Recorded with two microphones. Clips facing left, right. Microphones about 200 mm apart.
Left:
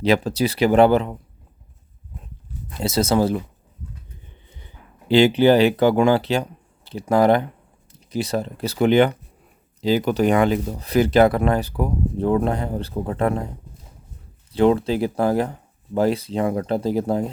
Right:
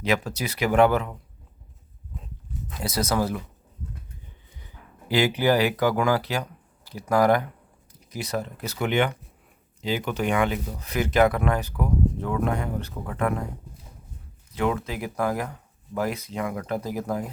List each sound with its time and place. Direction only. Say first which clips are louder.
0.0 s speech: left 7 dB; 30° left (ahead or behind)
2.7 s speech: left 6 dB; 25° left (ahead or behind)
4.6 s speech: even; 25° left (ahead or behind)
14.5 s speech: left 9 dB; 30° left (ahead or behind)